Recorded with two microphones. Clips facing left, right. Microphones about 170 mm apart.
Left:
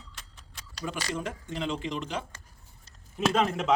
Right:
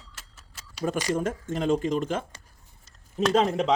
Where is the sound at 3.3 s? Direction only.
35° right (ahead or behind).